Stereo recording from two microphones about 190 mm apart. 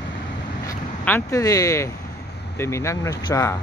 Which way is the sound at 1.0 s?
15° left (ahead or behind).